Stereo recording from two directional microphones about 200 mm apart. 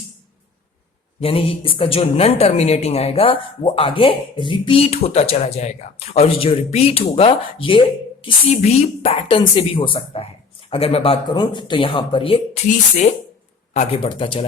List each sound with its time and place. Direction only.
1.2 s speech: 30° left (ahead or behind)
13.7 s speech: 25° left (ahead or behind)